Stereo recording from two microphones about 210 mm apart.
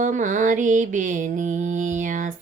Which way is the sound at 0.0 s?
35° right (ahead or behind).